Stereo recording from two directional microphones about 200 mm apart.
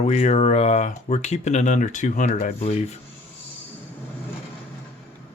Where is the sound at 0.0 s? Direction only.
35° left (ahead or behind).